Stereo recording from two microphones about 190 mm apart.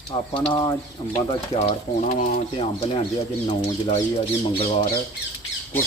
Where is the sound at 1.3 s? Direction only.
35° left (ahead or behind).